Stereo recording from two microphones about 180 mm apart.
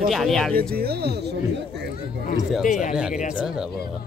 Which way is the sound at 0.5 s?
60° right (ahead or behind).